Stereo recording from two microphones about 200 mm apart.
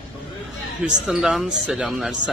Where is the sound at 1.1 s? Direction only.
Centre (ahead or behind).